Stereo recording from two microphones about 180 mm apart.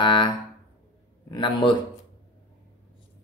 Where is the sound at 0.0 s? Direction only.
25° left (ahead or behind).